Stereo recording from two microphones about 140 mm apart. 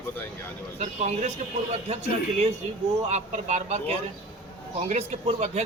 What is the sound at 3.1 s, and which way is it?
A man's voice, 55° right (ahead or behind).